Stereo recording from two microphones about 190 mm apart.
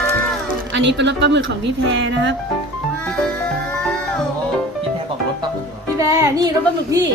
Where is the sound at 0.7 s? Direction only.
70° right (ahead or behind).